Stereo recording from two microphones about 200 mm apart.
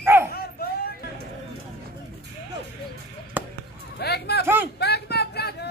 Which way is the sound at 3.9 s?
55° left (ahead or behind).